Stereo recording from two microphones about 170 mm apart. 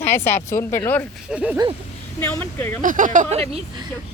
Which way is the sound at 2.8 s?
50° right (ahead or behind).